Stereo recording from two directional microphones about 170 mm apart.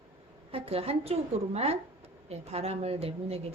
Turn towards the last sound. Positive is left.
turn(degrees=-35)  # may be behind; listen again after turning